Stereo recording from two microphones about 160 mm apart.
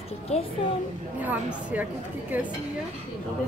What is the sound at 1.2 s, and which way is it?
A woman's voice, 10° right (ahead or behind).